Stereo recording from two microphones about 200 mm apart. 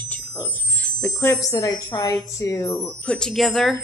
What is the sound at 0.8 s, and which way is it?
Speech, 10° left (ahead or behind).